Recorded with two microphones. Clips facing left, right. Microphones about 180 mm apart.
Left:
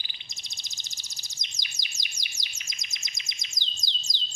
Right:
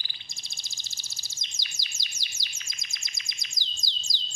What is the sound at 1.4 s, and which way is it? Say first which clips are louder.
Chirp: left 2 dB; 20° left (ahead or behind).